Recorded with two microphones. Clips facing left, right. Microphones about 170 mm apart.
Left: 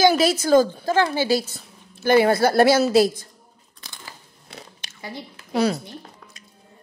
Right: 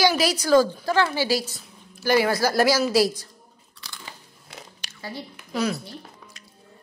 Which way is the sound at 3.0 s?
50° left (ahead or behind).